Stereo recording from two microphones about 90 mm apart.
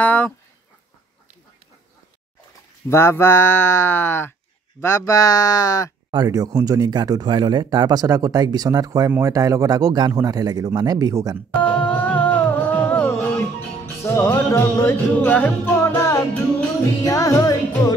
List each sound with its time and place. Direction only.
0.0 s speech: 15° left (ahead or behind)
2.9 s speech: 30° left (ahead or behind)
6.1 s speech: 45° right (ahead or behind)
11.3 s music: 15° left (ahead or behind); by 15.3 s 35° left (ahead or behind)
15.3 s music: 20° left (ahead or behind)
15.8 s music: 40° left (ahead or behind)